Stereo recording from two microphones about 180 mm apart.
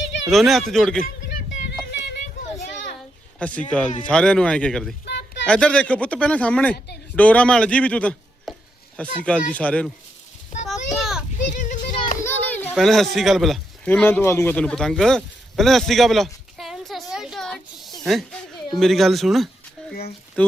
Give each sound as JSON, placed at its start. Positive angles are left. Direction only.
{"t": 0.3, "sound": "speech", "side_deg": 0}
{"t": 1.9, "sound": "a sound", "side_deg": 70}
{"t": 3.3, "sound": "speech", "side_deg": 5}
{"t": 5.0, "sound": "a sound", "side_deg": 70}
{"t": 5.5, "sound": "a man's voice", "side_deg": 5}
{"t": 10.7, "sound": "a sound", "side_deg": 0}
{"t": 11.5, "sound": "children playing", "side_deg": 45}
{"t": 12.2, "sound": "children playing", "side_deg": 10}
{"t": 12.7, "sound": "speech", "side_deg": 0}
{"t": 19.9, "sound": "speech", "side_deg": 60}